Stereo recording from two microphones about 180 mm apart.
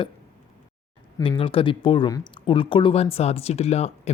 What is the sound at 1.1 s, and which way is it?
Speech, 20° left (ahead or behind).